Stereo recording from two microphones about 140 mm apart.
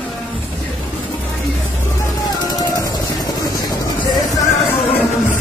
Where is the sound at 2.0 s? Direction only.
25° left (ahead or behind).